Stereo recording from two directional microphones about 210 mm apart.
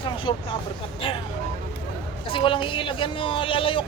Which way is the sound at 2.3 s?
25° left (ahead or behind).